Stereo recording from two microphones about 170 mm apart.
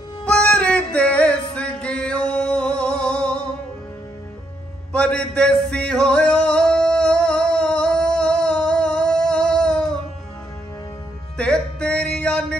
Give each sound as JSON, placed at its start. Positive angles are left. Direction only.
{"t": 0.2, "sound": "music", "side_deg": 5}
{"t": 4.9, "sound": "music", "side_deg": 5}
{"t": 11.3, "sound": "music", "side_deg": 5}